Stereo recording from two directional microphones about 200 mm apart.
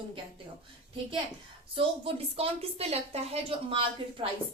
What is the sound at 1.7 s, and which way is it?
A woman's voice, 30° right (ahead or behind).